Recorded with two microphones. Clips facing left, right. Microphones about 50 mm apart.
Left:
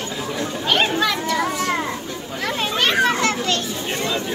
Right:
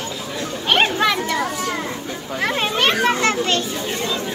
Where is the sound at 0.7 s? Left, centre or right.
Right.